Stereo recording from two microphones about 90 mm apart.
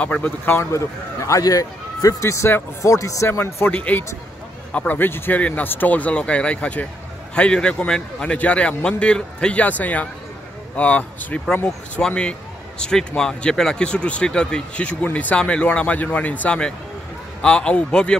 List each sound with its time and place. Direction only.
0.0 s a man's voice: 15° left (ahead or behind)